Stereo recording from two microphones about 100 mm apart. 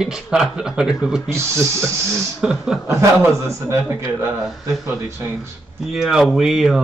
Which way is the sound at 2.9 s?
30° right (ahead or behind).